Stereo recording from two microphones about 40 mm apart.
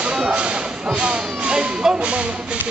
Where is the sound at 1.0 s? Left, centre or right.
Right.